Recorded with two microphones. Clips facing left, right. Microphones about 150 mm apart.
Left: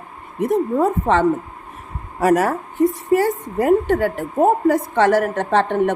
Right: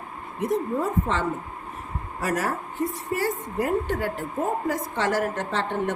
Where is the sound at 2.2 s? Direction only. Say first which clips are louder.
Left 10 dB; 65° left (ahead or behind).